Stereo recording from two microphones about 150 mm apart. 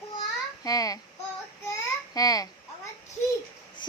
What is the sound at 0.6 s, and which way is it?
Speech, 25° left (ahead or behind).